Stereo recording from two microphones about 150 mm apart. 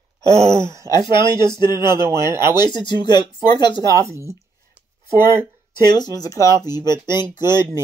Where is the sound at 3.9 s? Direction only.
20° right (ahead or behind).